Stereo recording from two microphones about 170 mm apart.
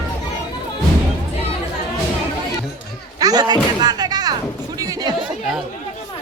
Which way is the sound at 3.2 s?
25° right (ahead or behind).